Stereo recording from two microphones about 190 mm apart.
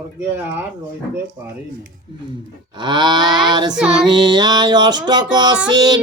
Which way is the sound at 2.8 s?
25° right (ahead or behind).